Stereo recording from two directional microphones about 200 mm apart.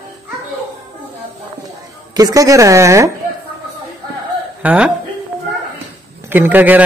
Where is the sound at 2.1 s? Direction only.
15° right (ahead or behind).